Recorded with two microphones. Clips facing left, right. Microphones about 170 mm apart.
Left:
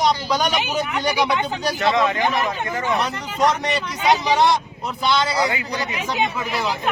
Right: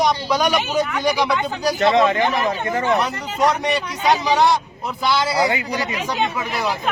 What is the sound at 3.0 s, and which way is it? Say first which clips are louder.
Speech: right 1 dB; centre (ahead or behind).